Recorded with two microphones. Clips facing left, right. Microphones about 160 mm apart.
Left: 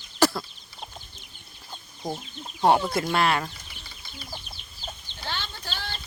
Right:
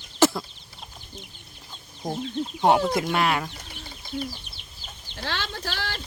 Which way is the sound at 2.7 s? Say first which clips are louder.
Right 1 dB; 10° right (ahead or behind).